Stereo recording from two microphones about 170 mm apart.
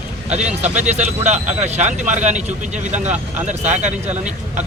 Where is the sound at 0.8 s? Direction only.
40° right (ahead or behind).